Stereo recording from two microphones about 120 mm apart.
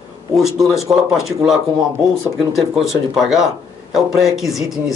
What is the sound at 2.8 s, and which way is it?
Speech, centre (ahead or behind).